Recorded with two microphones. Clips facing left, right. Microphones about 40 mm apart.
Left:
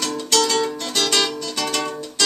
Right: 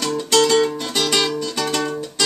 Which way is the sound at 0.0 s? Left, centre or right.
Centre.